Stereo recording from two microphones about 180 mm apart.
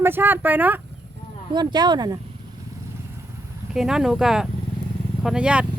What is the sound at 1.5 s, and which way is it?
Speech, 25° right (ahead or behind).